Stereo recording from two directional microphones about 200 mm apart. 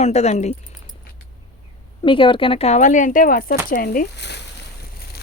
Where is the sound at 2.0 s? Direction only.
25° left (ahead or behind); by 4.4 s 55° left (ahead or behind).